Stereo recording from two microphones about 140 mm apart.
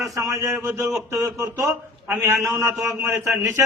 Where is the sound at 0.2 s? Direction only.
20° right (ahead or behind).